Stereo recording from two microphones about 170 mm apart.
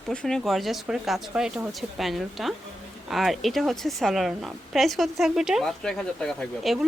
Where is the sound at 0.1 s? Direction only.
5° left (ahead or behind).